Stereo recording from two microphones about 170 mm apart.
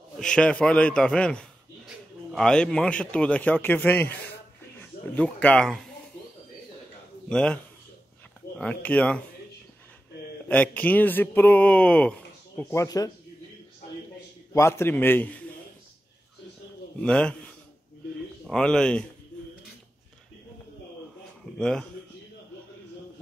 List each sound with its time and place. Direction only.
0.2 s a man's voice: 5° left (ahead or behind)
7.2 s a man's voice: 5° left (ahead or behind)
10.5 s speech: 10° left (ahead or behind)
12.8 s speech: 20° left (ahead or behind)
14.5 s speech: 15° left (ahead or behind)
17.0 s speech: 5° left (ahead or behind)
18.5 s a man's voice: 5° left (ahead or behind)
21.5 s a man's voice: 5° left (ahead or behind)